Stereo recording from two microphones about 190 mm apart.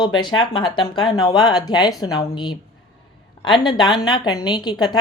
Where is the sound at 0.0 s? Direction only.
25° left (ahead or behind).